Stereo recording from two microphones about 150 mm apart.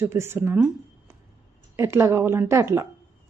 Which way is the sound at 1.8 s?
20° right (ahead or behind).